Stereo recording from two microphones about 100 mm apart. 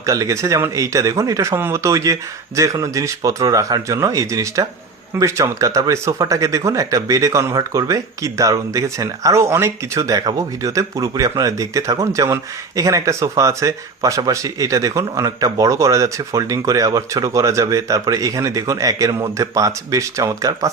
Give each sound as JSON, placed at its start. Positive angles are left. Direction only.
{"t": 0.0, "sound": "speech", "side_deg": -30}
{"t": 10.2, "sound": "speech", "side_deg": -40}